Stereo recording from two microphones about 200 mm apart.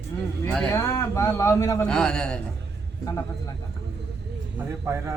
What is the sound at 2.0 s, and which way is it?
Speech, 5° left (ahead or behind).